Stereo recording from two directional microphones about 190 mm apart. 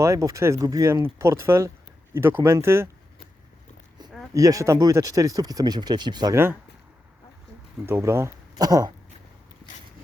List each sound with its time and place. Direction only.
0.0 s speech: 15° right (ahead or behind)
4.4 s speech: 15° right (ahead or behind)
7.9 s speech: 15° right (ahead or behind)